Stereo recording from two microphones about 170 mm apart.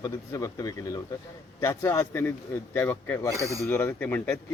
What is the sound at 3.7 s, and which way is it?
Speech, 10° left (ahead or behind).